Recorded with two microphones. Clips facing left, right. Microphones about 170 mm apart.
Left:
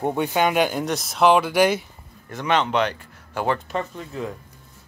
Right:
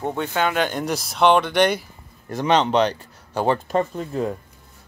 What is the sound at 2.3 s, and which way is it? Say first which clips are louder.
Speech: right 3 dB; 35° right (ahead or behind).